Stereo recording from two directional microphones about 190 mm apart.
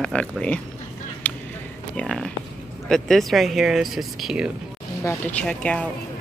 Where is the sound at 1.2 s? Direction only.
10° left (ahead or behind).